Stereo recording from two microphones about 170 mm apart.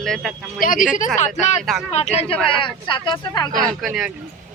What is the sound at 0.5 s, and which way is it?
Speech, 55° left (ahead or behind).